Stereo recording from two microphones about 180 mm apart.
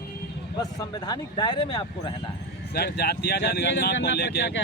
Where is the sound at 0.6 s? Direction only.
20° left (ahead or behind).